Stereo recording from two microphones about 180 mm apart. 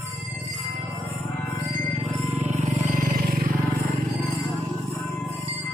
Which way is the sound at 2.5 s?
40° right (ahead or behind).